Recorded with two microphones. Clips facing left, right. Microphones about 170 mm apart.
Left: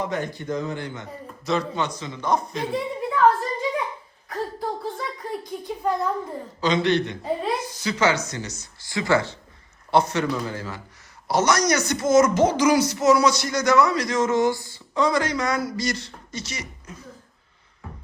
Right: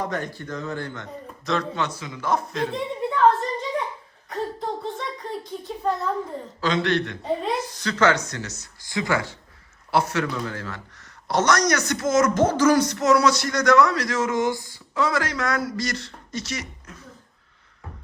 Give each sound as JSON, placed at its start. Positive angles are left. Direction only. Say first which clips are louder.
{"t": 0.3, "sound": "a man's voice", "louder": "left 3 dB", "side_deg": 15}
{"t": 4.3, "sound": "a sound", "louder": "even", "side_deg": 0}
{"t": 6.6, "sound": "a man's voice", "louder": "left 2 dB", "side_deg": 0}
{"t": 8.8, "sound": "a man's voice", "louder": "left 3 dB", "side_deg": -20}
{"t": 12.4, "sound": "a man's voice", "louder": "even", "side_deg": 15}
{"t": 14.4, "sound": "a sound", "louder": "left 2 dB", "side_deg": -20}
{"t": 14.9, "sound": "a man's voice", "louder": "left 2 dB", "side_deg": -5}